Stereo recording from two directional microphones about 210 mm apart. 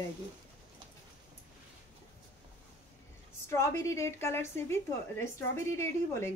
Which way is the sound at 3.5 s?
15° left (ahead or behind).